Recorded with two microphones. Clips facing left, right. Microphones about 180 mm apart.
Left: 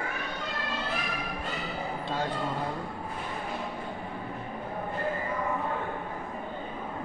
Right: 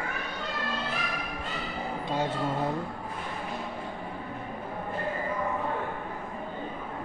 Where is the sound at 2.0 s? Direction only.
20° right (ahead or behind).